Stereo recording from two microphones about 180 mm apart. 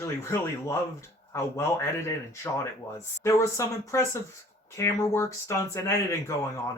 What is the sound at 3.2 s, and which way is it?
Speech, 15° left (ahead or behind).